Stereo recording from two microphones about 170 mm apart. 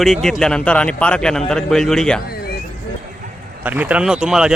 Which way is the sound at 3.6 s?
10° right (ahead or behind).